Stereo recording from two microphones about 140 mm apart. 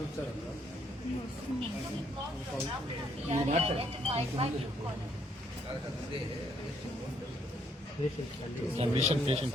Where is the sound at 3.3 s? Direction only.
50° right (ahead or behind).